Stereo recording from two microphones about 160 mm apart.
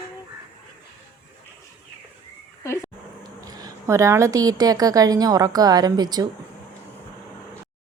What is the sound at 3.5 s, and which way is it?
A woman's voice, 20° right (ahead or behind).